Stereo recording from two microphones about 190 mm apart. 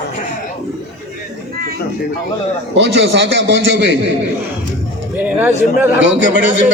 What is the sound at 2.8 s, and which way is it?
A man's voice, 70° right (ahead or behind).